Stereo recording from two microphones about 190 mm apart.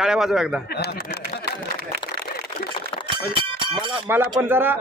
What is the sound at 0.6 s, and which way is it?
Speech, 60° left (ahead or behind).